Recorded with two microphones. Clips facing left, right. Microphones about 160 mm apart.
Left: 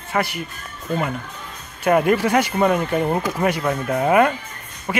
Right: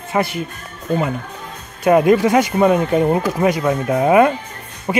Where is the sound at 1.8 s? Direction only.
20° right (ahead or behind).